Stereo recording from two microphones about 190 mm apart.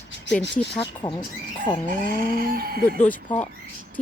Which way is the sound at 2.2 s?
50° right (ahead or behind).